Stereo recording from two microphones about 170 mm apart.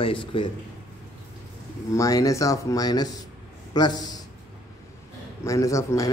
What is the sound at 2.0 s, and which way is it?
Speech, 20° left (ahead or behind).